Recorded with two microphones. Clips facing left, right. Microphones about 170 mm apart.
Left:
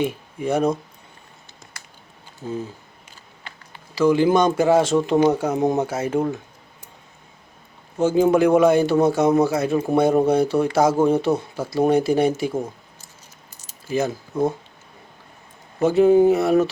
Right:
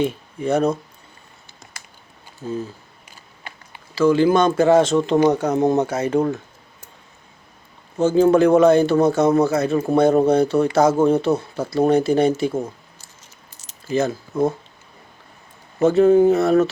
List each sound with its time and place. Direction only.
0.0 s speech: 10° left (ahead or behind)
2.4 s speech: 15° left (ahead or behind)
3.9 s speech: 15° left (ahead or behind)
7.9 s speech: 10° left (ahead or behind)
13.7 s speech: 10° left (ahead or behind)
15.8 s speech: 10° left (ahead or behind)